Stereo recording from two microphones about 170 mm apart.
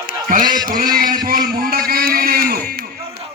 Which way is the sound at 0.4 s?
25° right (ahead or behind).